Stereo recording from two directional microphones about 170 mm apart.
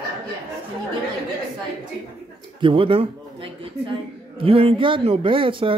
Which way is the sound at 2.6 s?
30° right (ahead or behind).